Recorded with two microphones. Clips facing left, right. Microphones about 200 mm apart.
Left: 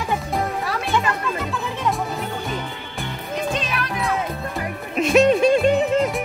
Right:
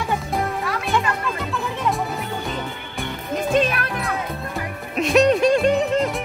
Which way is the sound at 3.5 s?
50° right (ahead or behind).